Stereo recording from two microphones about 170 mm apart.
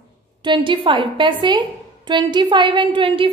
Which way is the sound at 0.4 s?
25° right (ahead or behind).